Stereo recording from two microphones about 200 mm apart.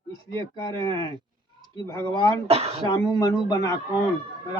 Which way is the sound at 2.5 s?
30° right (ahead or behind).